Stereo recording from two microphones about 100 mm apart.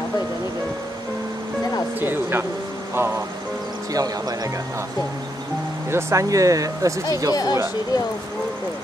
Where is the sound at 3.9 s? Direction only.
40° right (ahead or behind).